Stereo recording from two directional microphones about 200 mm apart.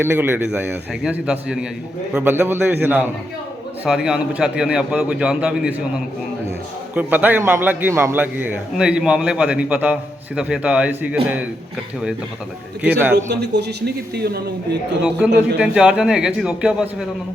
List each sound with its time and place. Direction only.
0.0 s a man's voice: 10° right (ahead or behind)
6.9 s a man's voice: 10° right (ahead or behind)
13.3 s a man's voice: 55° right (ahead or behind)
15.2 s a man's voice: 5° right (ahead or behind)